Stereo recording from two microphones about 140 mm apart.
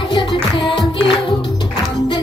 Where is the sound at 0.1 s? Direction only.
35° left (ahead or behind).